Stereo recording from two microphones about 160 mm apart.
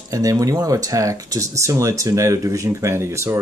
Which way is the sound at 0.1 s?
20° right (ahead or behind).